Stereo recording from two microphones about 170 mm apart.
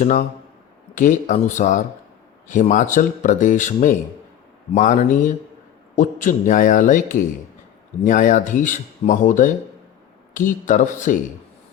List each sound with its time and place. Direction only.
0.0 s speech: 45° left (ahead or behind)